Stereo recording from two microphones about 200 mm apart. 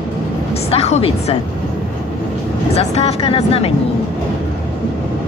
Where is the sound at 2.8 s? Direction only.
30° left (ahead or behind).